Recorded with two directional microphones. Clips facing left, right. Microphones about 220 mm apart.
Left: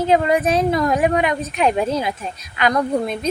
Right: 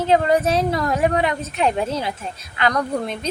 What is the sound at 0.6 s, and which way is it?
A woman's voice, 20° left (ahead or behind).